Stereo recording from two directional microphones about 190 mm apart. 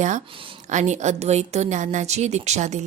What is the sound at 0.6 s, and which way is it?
A woman's voice, 40° right (ahead or behind).